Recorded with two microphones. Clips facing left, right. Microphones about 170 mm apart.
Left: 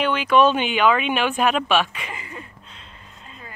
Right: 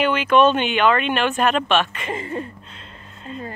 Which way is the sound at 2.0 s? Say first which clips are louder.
Right 10 dB; 40° right (ahead or behind).